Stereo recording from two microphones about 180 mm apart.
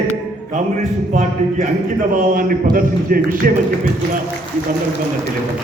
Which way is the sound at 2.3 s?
50° right (ahead or behind).